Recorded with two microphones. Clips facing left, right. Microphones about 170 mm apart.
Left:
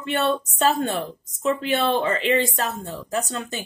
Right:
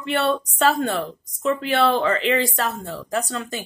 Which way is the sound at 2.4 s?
45° left (ahead or behind).